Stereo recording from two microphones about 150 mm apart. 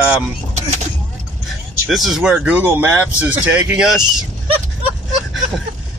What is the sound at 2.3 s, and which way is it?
Speech, 10° right (ahead or behind).